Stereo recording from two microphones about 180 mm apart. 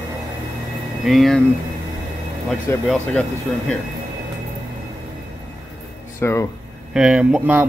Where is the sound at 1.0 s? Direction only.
Centre (ahead or behind).